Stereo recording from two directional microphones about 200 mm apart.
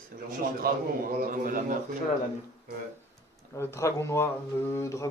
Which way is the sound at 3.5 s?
15° left (ahead or behind).